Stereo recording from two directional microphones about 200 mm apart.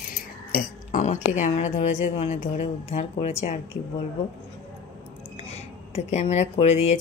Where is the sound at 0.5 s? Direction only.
40° left (ahead or behind).